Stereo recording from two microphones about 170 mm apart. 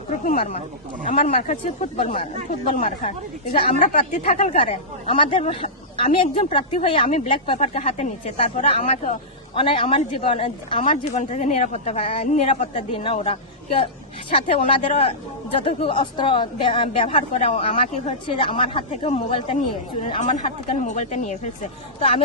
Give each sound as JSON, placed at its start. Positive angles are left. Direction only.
{"t": 0.1, "sound": "speech", "side_deg": 40}
{"t": 5.0, "sound": "speech", "side_deg": 30}
{"t": 9.6, "sound": "speech", "side_deg": 30}
{"t": 12.7, "sound": "speech", "side_deg": 35}
{"t": 14.4, "sound": "speech", "side_deg": 50}
{"t": 14.7, "sound": "speech", "side_deg": 35}